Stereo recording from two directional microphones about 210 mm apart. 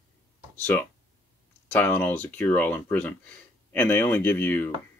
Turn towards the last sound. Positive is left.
turn(degrees=10)  # may be behind; listen again after turning